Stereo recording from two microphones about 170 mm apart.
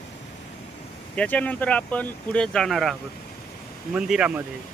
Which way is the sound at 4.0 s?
5° right (ahead or behind).